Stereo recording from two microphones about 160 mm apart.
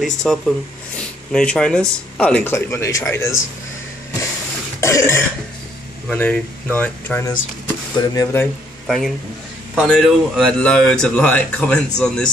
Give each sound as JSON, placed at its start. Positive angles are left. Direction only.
{"t": 0.0, "sound": "speech", "side_deg": 0}
{"t": 4.7, "sound": "cough", "side_deg": 20}
{"t": 6.0, "sound": "speech", "side_deg": 10}
{"t": 7.2, "sound": "speech", "side_deg": 20}
{"t": 8.8, "sound": "a man's voice", "side_deg": 0}